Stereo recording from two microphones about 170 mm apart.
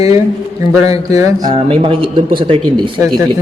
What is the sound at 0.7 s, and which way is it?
Speech, 20° right (ahead or behind).